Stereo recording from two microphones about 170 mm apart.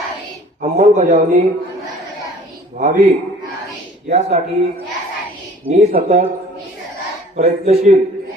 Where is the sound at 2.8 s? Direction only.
45° right (ahead or behind).